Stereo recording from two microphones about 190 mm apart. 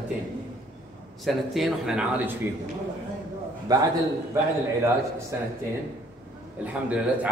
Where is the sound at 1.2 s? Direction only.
Centre (ahead or behind).